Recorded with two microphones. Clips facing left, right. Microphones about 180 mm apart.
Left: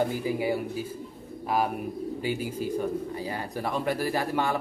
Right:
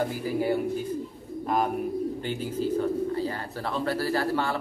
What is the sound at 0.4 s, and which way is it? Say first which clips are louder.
Speech: right 2 dB; 5° left (ahead or behind).